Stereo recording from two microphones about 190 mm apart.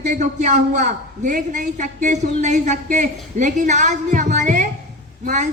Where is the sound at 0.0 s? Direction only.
40° right (ahead or behind).